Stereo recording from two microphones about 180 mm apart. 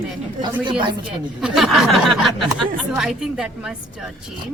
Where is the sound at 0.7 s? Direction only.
25° right (ahead or behind).